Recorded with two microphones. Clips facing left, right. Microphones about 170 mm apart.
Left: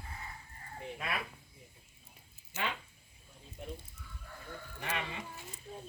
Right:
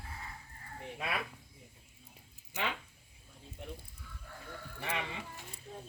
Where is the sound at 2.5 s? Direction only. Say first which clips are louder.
Right 1 dB; 15° right (ahead or behind).